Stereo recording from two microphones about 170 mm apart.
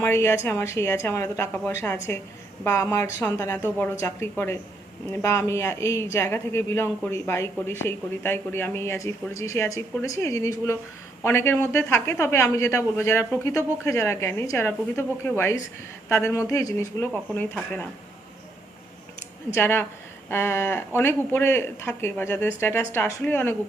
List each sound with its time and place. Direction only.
0.0 s a man's voice: 15° left (ahead or behind)
19.5 s a man's voice: 15° left (ahead or behind)